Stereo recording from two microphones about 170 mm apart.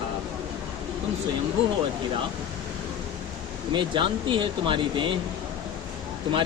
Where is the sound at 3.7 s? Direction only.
30° right (ahead or behind).